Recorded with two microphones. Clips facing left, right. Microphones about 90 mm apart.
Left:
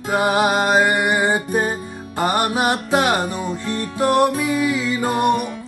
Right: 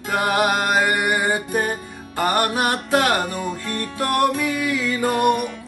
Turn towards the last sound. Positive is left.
turn(degrees=25)  # may be behind; listen again after turning